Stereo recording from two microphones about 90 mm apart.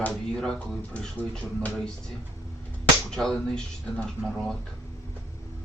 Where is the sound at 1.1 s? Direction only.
10° left (ahead or behind).